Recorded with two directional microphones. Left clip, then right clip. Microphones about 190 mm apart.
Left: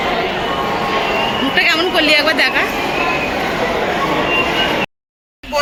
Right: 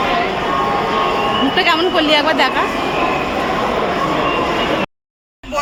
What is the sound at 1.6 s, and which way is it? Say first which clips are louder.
Speech: left 2 dB; 20° right (ahead or behind).